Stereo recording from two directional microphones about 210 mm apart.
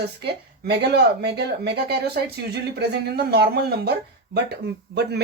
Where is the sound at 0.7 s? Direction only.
50° right (ahead or behind).